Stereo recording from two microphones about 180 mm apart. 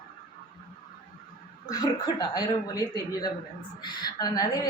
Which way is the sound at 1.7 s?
20° left (ahead or behind).